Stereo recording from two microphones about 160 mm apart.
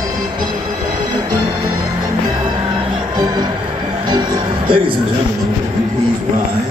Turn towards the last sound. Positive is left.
turn(degrees=-30)  # may be behind; listen again after turning